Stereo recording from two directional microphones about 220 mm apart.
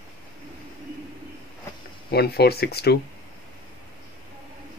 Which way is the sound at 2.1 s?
45° left (ahead or behind).